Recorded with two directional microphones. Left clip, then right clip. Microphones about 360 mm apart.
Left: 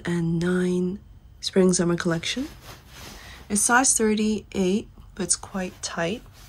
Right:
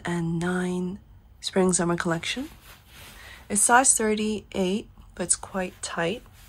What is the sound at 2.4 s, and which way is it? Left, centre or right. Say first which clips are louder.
Rub: left 4 dB; left.